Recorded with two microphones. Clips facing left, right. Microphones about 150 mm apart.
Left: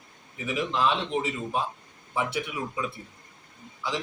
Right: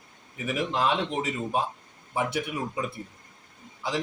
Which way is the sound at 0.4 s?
50° right (ahead or behind).